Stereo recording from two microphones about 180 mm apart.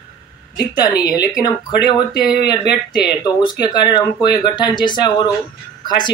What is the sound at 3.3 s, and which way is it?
Speech, 25° left (ahead or behind).